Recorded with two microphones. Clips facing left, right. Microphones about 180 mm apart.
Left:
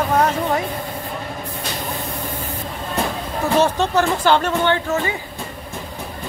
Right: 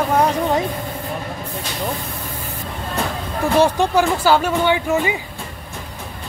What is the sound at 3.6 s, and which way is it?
Speech, 10° right (ahead or behind).